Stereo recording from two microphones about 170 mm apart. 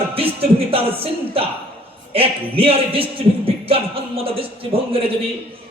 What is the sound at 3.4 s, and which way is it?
Music, 35° right (ahead or behind).